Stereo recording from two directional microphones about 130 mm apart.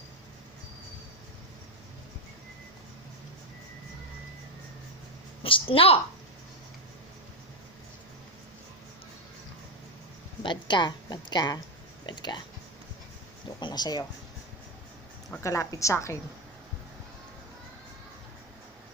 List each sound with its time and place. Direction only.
5.4 s a woman's voice: 45° left (ahead or behind)
10.4 s a woman's voice: 35° left (ahead or behind)
13.6 s speech: 35° left (ahead or behind)
15.4 s a woman's voice: 25° left (ahead or behind)